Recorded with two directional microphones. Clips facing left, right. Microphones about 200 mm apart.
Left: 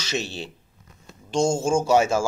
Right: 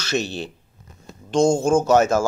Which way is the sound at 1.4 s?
10° left (ahead or behind).